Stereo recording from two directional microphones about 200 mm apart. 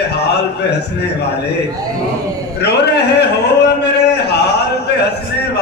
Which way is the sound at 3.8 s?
55° left (ahead or behind).